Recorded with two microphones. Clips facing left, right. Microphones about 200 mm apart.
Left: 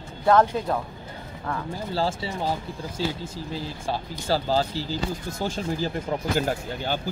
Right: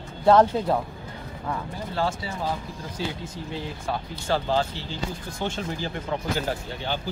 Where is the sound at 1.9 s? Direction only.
30° left (ahead or behind).